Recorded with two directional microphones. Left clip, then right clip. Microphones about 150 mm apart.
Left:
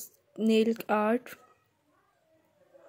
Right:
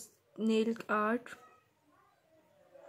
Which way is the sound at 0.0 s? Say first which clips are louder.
Left 6 dB; 40° left (ahead or behind).